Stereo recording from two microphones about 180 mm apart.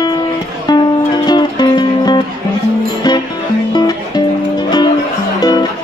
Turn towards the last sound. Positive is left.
turn(degrees=20)  # may be behind; listen again after turning